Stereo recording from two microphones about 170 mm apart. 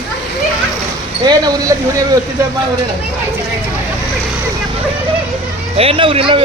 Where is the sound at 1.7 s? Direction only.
25° right (ahead or behind).